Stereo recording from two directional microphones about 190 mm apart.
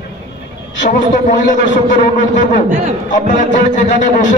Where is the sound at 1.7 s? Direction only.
40° left (ahead or behind).